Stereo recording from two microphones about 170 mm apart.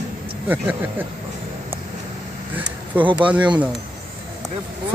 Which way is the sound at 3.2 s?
10° right (ahead or behind).